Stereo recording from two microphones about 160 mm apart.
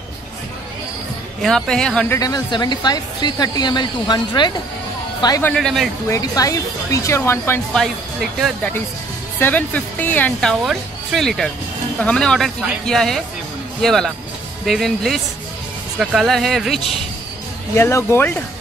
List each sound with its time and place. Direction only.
1.4 s speech: 5° left (ahead or behind)
2.1 s speech: 25° left (ahead or behind)
5.4 s speech: 5° left (ahead or behind)
6.0 s speech: 20° left (ahead or behind)
7.7 s speech: centre (ahead or behind)
9.4 s speech: 10° left (ahead or behind)
17.7 s speech: 15° left (ahead or behind)